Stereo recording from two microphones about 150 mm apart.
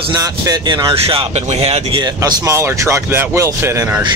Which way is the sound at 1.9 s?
30° right (ahead or behind).